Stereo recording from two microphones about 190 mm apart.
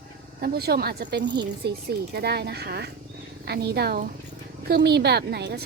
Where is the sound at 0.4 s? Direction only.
55° right (ahead or behind).